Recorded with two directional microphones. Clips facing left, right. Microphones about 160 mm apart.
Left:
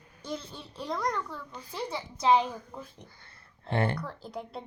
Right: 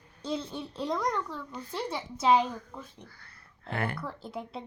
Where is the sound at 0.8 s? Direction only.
Centre (ahead or behind).